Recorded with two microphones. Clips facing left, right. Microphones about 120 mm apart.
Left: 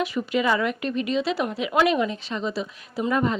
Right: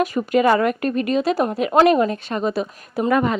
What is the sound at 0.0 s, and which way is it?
A woman's voice, 45° right (ahead or behind).